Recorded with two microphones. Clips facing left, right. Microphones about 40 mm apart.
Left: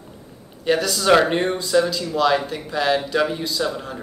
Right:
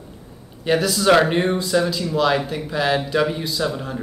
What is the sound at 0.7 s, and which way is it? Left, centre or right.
A man's voice, centre.